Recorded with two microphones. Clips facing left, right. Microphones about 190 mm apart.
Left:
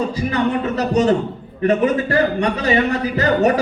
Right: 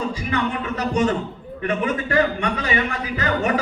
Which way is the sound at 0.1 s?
40° left (ahead or behind).